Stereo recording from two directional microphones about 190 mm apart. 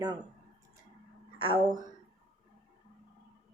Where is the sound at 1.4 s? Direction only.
25° right (ahead or behind).